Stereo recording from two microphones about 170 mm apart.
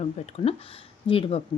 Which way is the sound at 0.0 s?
35° left (ahead or behind).